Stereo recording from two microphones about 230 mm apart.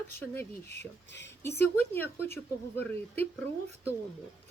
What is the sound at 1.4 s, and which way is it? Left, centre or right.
Speech, centre.